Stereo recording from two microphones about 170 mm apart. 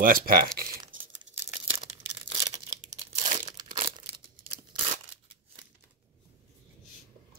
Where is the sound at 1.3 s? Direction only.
40° right (ahead or behind).